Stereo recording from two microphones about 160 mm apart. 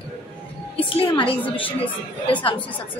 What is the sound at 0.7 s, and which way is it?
Speech, 35° left (ahead or behind).